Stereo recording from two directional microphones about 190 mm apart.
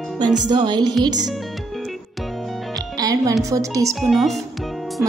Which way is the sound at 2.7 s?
20° right (ahead or behind).